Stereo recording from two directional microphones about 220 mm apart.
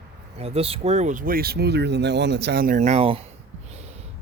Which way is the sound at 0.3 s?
25° right (ahead or behind).